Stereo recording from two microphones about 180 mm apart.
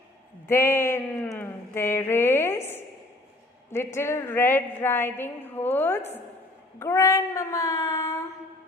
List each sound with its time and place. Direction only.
0.4 s a woman's voice: 15° left (ahead or behind)